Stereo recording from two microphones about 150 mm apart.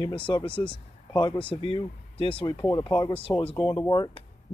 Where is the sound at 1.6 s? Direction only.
40° left (ahead or behind).